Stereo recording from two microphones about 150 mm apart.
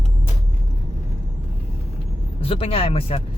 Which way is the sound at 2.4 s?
40° left (ahead or behind).